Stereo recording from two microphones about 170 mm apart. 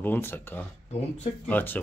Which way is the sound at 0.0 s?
10° left (ahead or behind).